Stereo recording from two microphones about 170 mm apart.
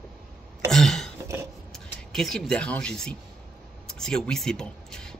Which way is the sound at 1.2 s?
15° right (ahead or behind).